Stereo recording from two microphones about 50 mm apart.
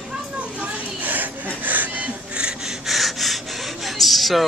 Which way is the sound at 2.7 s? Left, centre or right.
Centre.